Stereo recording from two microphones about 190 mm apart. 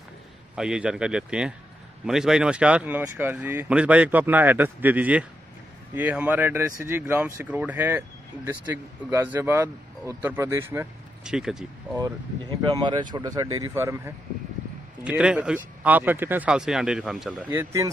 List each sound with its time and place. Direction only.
0.6 s speech: 5° right (ahead or behind)
9.1 s speech: 10° right (ahead or behind)
11.2 s speech: 5° right (ahead or behind)
12.0 s speech: 25° right (ahead or behind); by 17.5 s centre (ahead or behind)
17.5 s speech: 15° right (ahead or behind)